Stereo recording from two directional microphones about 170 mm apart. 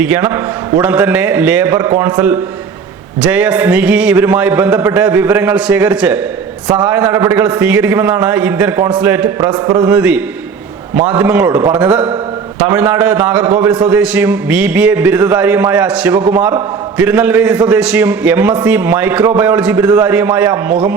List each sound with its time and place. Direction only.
0.0 s a man's voice: 10° right (ahead or behind)
3.2 s a man's voice: 5° right (ahead or behind)
9.5 s speech: 25° right (ahead or behind)
9.8 s a man's voice: 5° right (ahead or behind)